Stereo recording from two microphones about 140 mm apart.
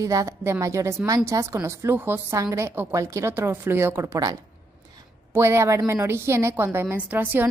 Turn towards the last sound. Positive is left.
turn(degrees=-10)  # may be behind; listen again after turning